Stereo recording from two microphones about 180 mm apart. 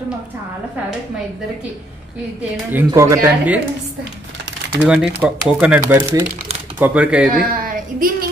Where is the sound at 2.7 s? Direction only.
15° right (ahead or behind).